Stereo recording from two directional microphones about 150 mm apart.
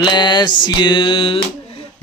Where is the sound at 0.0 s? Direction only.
30° left (ahead or behind).